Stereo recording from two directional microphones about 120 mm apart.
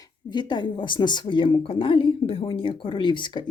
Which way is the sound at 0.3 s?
40° left (ahead or behind).